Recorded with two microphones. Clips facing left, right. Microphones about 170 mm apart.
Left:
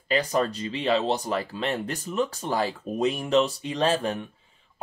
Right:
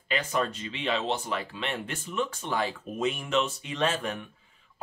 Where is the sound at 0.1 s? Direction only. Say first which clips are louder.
Left 5 dB; 35° left (ahead or behind).